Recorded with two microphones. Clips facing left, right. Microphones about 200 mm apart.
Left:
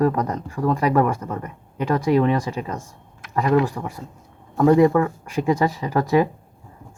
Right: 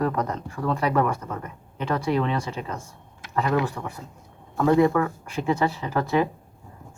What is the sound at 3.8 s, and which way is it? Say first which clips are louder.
Speech: left 3 dB; 25° left (ahead or behind).